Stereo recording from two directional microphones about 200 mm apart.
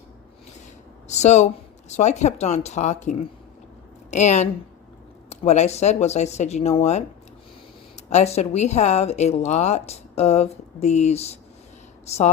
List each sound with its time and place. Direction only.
1.0 s a woman's voice: 35° left (ahead or behind)
8.1 s a woman's voice: 35° left (ahead or behind)